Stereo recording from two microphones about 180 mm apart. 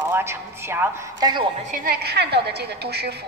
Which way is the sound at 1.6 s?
60° right (ahead or behind).